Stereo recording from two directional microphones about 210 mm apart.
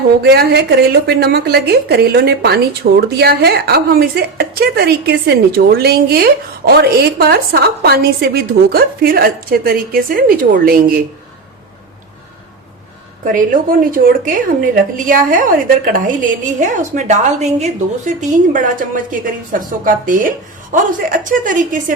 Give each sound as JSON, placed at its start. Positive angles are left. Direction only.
{"t": 0.2, "sound": "a woman's voice", "side_deg": -50}
{"t": 13.2, "sound": "a woman's voice", "side_deg": -40}